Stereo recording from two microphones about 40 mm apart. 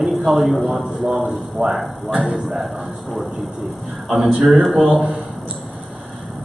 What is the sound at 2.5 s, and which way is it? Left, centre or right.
Speech, centre.